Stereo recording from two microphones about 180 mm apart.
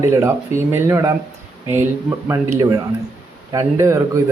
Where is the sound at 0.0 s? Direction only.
15° right (ahead or behind).